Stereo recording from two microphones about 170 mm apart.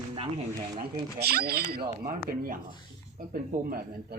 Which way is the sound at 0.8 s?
70° right (ahead or behind).